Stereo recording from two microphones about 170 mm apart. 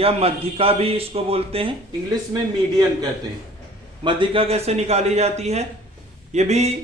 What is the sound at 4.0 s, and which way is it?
A man's voice, 30° right (ahead or behind).